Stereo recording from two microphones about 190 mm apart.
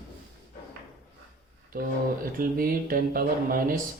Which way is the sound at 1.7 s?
50° right (ahead or behind).